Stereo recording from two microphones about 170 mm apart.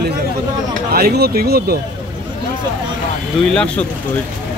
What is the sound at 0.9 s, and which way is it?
Speech, 65° right (ahead or behind).